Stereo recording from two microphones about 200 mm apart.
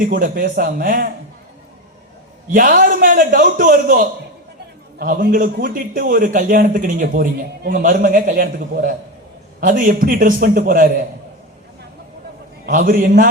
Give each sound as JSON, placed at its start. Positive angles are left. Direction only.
{"t": 0.0, "sound": "a man's voice", "side_deg": -45}
{"t": 2.5, "sound": "a man's voice", "side_deg": -40}
{"t": 12.6, "sound": "a man's voice", "side_deg": -45}